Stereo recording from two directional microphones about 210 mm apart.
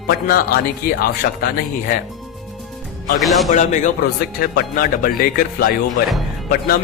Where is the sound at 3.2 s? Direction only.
Centre (ahead or behind).